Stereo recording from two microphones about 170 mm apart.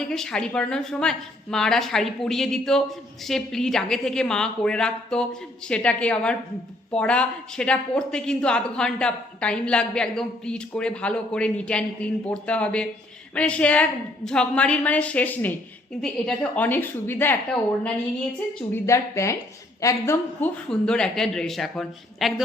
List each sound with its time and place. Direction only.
0.0 s a woman's voice: 5° left (ahead or behind)
18.7 s a woman's voice: 15° left (ahead or behind)
20.7 s speech: 5° left (ahead or behind)